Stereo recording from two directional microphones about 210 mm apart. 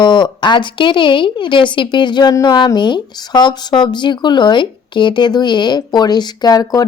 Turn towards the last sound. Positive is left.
turn(degrees=15)  # may be behind; listen again after turning